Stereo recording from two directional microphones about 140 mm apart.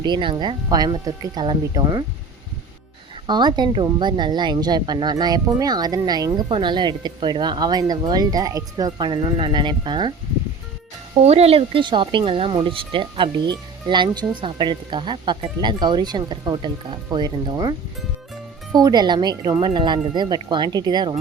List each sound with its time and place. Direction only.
0.0 s speech: 35° right (ahead or behind)
3.2 s speech: 30° right (ahead or behind)
11.2 s speech: 50° right (ahead or behind); by 21.2 s 30° right (ahead or behind)